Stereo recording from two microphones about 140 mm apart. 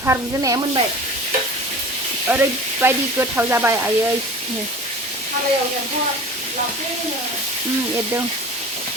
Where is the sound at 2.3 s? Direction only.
15° right (ahead or behind).